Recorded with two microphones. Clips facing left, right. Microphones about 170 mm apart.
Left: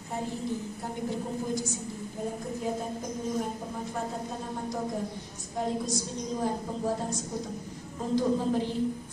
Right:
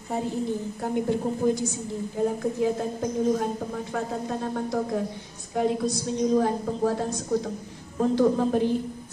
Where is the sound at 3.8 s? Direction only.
75° right (ahead or behind).